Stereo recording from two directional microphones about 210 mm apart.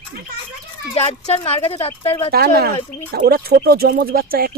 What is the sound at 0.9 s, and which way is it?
Speech, 30° left (ahead or behind).